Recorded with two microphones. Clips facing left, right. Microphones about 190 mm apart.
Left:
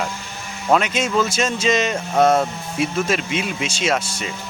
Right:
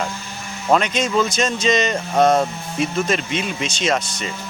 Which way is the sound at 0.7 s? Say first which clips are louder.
Even; 5° left (ahead or behind).